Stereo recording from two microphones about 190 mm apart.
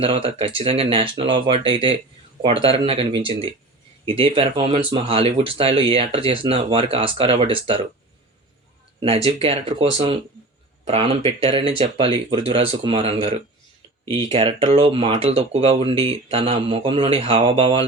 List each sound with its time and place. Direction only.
0.0 s speech: 30° right (ahead or behind)
9.0 s speech: 30° right (ahead or behind)